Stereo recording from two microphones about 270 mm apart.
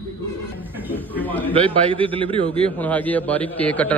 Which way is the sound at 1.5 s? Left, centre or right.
Centre.